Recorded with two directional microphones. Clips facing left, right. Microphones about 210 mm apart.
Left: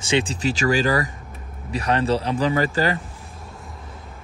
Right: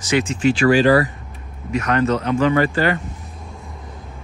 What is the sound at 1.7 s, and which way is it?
Speech, 30° left (ahead or behind).